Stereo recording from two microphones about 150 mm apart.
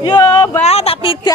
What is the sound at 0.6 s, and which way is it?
Speech, 40° left (ahead or behind).